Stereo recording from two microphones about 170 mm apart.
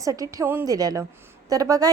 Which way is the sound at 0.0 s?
20° right (ahead or behind).